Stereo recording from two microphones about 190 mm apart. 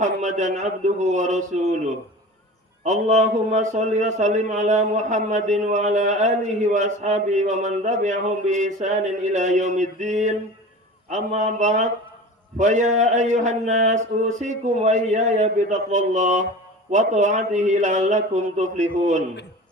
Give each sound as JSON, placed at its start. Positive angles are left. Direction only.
{"t": 0.0, "sound": "a man's voice", "side_deg": -40}